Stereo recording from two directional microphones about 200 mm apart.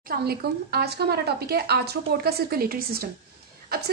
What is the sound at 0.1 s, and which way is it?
A woman's voice, 50° right (ahead or behind).